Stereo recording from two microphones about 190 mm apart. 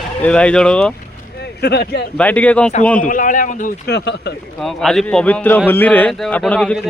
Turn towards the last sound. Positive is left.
turn(degrees=5)  # may be behind; listen again after turning